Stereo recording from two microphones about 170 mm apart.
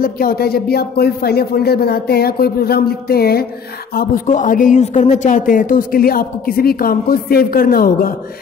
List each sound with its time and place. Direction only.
0.0 s speech: 60° left (ahead or behind)